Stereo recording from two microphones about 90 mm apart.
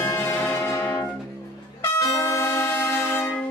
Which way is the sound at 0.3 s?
20° left (ahead or behind).